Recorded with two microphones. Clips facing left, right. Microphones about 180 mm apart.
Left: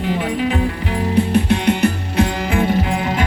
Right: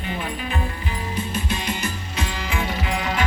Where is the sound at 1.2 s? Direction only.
65° left (ahead or behind); by 3.2 s 45° left (ahead or behind).